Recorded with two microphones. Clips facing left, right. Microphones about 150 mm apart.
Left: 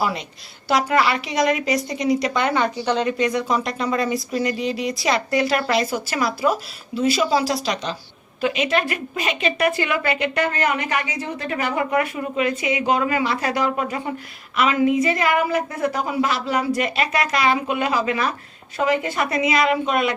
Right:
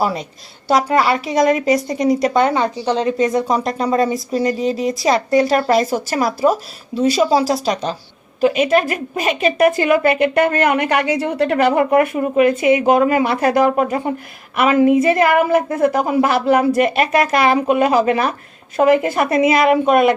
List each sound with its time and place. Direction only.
0.0 s a woman's voice: 40° right (ahead or behind)
2.5 s a woman's voice: 30° right (ahead or behind); by 20.1 s 50° right (ahead or behind)